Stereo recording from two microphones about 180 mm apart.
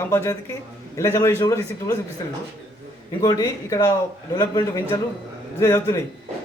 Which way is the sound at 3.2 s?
20° left (ahead or behind).